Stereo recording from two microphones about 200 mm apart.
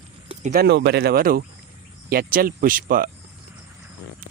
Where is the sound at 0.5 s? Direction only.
55° right (ahead or behind).